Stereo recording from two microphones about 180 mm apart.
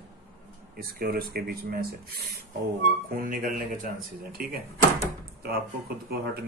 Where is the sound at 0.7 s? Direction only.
55° right (ahead or behind).